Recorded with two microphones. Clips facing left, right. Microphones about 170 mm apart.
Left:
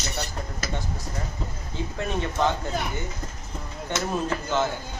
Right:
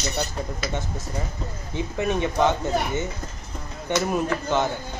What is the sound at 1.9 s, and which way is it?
Speech, 20° right (ahead or behind).